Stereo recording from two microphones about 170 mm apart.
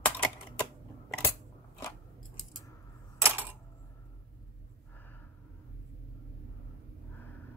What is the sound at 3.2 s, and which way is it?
Coin, 15° right (ahead or behind).